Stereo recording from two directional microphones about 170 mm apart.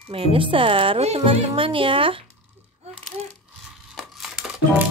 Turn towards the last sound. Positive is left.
turn(degrees=0)  # may be behind; listen again after turning